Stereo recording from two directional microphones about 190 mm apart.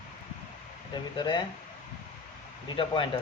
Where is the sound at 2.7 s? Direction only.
25° left (ahead or behind).